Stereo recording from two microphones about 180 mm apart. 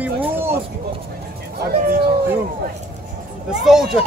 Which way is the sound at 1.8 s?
55° right (ahead or behind).